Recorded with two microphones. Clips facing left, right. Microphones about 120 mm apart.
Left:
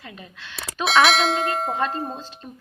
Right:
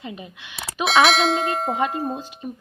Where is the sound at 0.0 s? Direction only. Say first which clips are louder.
Right 5 dB; 20° right (ahead or behind).